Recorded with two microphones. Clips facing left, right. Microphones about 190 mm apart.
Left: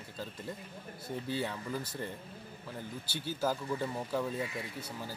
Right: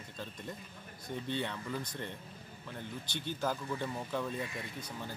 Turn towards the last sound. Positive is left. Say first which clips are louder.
# left 1 dB
turn(degrees=5)  # may be behind; listen again after turning